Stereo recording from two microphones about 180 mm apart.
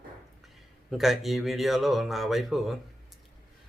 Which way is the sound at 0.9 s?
Centre (ahead or behind).